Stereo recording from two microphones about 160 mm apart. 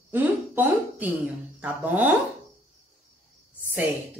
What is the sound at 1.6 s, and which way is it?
Speech, 10° right (ahead or behind).